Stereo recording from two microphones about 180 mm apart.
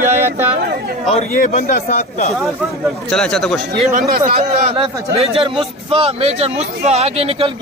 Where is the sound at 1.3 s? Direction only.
55° left (ahead or behind).